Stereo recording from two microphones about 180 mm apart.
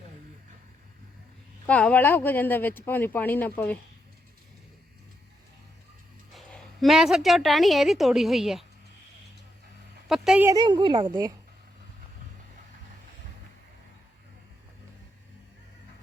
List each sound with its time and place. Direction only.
1.6 s speech: 5° left (ahead or behind)
6.3 s a woman's voice: centre (ahead or behind)
10.1 s speech: centre (ahead or behind)
10.4 s a woman's voice: 20° right (ahead or behind)